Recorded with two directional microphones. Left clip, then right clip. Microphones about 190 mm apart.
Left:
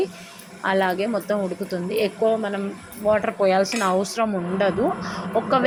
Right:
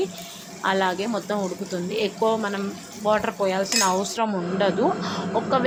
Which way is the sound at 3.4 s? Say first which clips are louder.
Left 3 dB; 15° left (ahead or behind).